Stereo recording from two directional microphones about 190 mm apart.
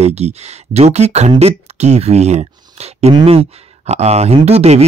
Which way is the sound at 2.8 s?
35° right (ahead or behind).